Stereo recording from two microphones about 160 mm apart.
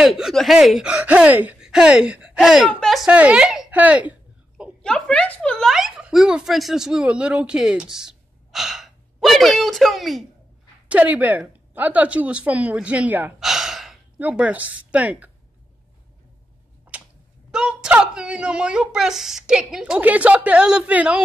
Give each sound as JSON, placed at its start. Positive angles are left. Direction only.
{"t": 0.0, "sound": "a woman's voice", "side_deg": 0}
{"t": 4.8, "sound": "speech", "side_deg": 5}
{"t": 10.9, "sound": "a woman's voice", "side_deg": -10}
{"t": 16.9, "sound": "tick-tock", "side_deg": -10}
{"t": 17.5, "sound": "a sound", "side_deg": -5}
{"t": 17.8, "sound": "a woman's voice", "side_deg": -5}